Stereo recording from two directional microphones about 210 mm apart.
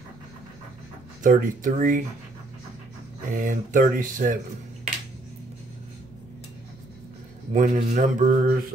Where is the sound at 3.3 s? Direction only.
40° right (ahead or behind).